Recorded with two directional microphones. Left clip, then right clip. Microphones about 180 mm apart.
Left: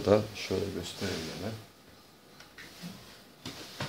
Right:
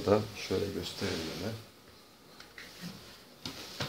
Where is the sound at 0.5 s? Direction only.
5° left (ahead or behind).